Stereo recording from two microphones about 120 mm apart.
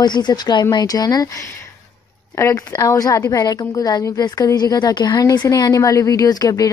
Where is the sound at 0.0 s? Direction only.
35° left (ahead or behind).